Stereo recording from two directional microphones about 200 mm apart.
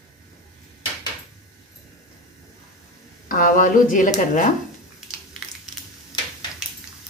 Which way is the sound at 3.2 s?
40° left (ahead or behind).